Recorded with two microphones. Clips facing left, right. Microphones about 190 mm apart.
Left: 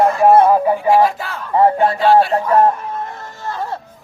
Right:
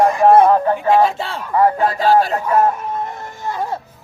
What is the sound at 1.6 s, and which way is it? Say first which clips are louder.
Speech: left 2 dB; 25° left (ahead or behind).